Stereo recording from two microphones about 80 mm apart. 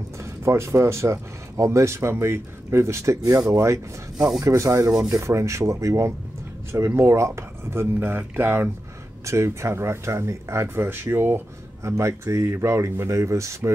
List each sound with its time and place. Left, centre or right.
0.2 s speech: right
9.2 s speech: right